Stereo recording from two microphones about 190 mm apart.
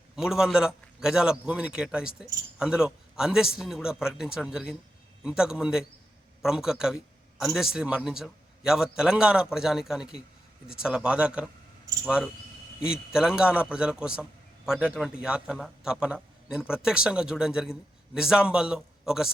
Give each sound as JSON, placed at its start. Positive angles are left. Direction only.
{"t": 0.2, "sound": "a man's voice", "side_deg": 0}